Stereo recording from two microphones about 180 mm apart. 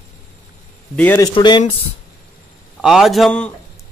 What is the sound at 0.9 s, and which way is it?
Speech, 10° left (ahead or behind).